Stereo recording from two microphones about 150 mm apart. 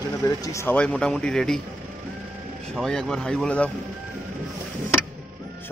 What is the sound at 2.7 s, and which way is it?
Speech, 5° left (ahead or behind).